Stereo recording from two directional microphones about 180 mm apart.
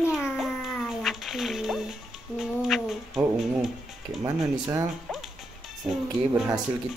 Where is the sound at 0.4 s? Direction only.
Centre (ahead or behind).